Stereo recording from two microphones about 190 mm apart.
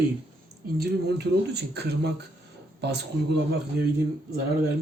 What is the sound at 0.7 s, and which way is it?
Speech, 60° right (ahead or behind).